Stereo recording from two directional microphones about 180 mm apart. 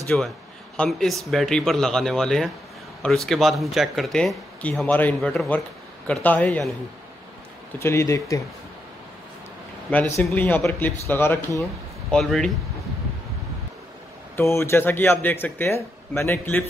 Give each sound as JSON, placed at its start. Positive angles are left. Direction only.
{"t": 0.1, "sound": "speech", "side_deg": 5}
{"t": 7.8, "sound": "speech", "side_deg": 15}
{"t": 9.8, "sound": "speech", "side_deg": 10}
{"t": 12.1, "sound": "speech", "side_deg": 0}
{"t": 14.3, "sound": "speech", "side_deg": 15}